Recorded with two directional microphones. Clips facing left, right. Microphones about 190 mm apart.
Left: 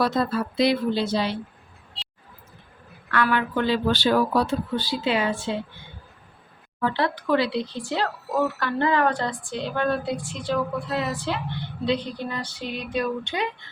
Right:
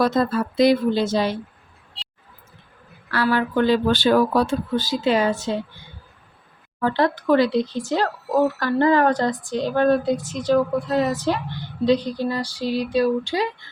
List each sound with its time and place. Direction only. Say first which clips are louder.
0.0 s speech: right 3 dB; 45° right (ahead or behind)
3.1 s speech: right 2 dB; 30° right (ahead or behind)
6.7 s speech: right 4 dB; 45° right (ahead or behind)